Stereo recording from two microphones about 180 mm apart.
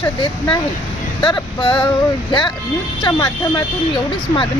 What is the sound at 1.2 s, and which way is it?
Male singing, 25° left (ahead or behind).